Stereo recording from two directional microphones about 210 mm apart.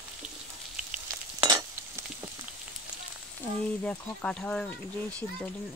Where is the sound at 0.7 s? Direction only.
5° right (ahead or behind).